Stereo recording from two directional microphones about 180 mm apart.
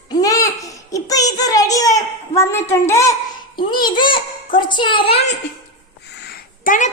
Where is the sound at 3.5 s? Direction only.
25° left (ahead or behind).